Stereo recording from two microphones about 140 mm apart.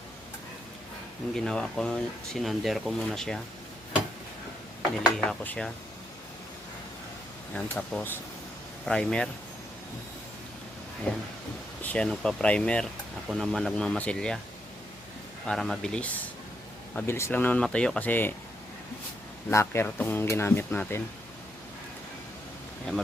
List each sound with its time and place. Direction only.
1.4 s speech: 5° left (ahead or behind)
5.1 s speech: 5° left (ahead or behind)
7.5 s speech: 10° left (ahead or behind)
11.1 s speech: 10° left (ahead or behind)
15.4 s speech: centre (ahead or behind)
17.1 s speech: 20° left (ahead or behind)
19.5 s speech: 20° left (ahead or behind)